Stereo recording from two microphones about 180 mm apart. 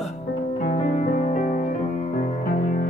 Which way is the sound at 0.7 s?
45° left (ahead or behind).